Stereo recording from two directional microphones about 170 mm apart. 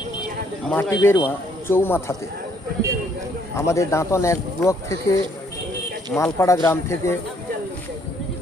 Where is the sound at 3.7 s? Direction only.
15° left (ahead or behind).